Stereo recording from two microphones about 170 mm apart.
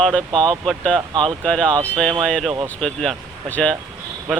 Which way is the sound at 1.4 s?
5° left (ahead or behind).